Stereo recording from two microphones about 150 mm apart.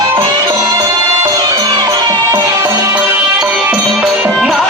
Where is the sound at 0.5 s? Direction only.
20° right (ahead or behind).